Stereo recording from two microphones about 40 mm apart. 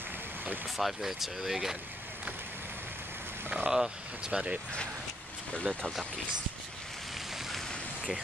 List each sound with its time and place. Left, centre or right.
0.7 s speech: centre
3.6 s speech: centre
4.3 s speech: right
5.6 s speech: right
7.3 s vehicle: centre